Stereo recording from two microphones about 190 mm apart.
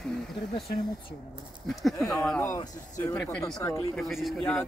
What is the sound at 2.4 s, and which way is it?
Speech, 20° left (ahead or behind).